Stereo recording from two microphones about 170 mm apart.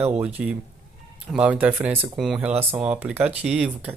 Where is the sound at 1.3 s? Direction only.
5° right (ahead or behind).